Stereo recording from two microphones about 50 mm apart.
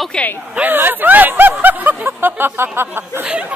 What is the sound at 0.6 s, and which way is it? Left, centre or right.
Speech, right.